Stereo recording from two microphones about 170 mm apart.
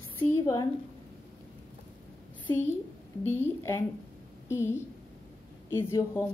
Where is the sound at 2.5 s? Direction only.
10° left (ahead or behind).